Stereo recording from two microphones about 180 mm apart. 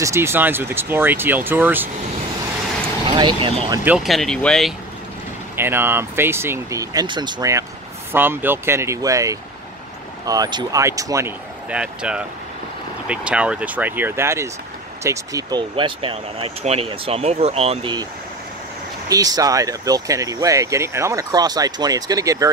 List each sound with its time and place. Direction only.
0.0 s speech: 15° right (ahead or behind)
3.1 s speech: 25° right (ahead or behind)
3.8 s speech: 5° right (ahead or behind)
5.6 s speech: 10° right (ahead or behind)
15.7 s speech: 30° right (ahead or behind)
19.0 s speech: 20° right (ahead or behind)